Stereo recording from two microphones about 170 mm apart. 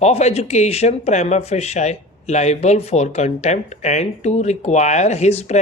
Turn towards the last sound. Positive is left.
turn(degrees=40)  # may be behind; listen again after turning